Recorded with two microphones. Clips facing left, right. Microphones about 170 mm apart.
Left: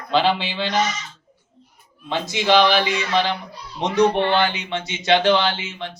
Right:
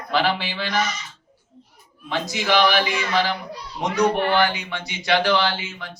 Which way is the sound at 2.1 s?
20° left (ahead or behind).